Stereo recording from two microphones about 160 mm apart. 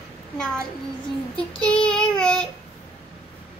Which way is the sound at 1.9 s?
5° left (ahead or behind).